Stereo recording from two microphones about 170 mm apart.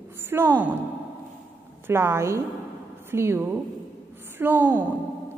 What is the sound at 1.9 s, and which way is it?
A woman's voice, 15° right (ahead or behind).